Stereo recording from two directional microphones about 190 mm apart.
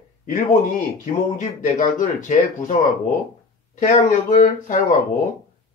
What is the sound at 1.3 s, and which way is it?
Speech, 40° left (ahead or behind).